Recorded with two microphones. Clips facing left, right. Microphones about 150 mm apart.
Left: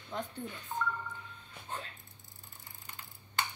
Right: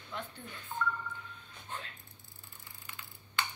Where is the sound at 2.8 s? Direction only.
40° left (ahead or behind).